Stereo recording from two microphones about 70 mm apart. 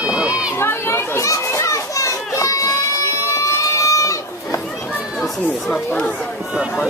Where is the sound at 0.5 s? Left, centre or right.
Left.